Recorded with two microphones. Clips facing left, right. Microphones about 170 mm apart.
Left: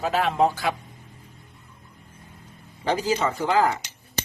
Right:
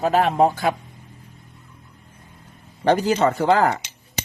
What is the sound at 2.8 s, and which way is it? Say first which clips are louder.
Speech: right 6 dB; 65° right (ahead or behind).